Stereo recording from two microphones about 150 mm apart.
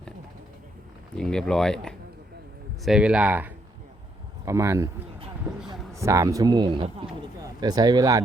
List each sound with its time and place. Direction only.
1.1 s speech: 5° left (ahead or behind); by 4.9 s 20° right (ahead or behind)
5.9 s speech: 20° right (ahead or behind)